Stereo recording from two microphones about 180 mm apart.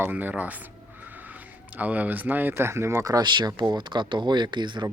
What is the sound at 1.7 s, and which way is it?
Speech, 10° right (ahead or behind).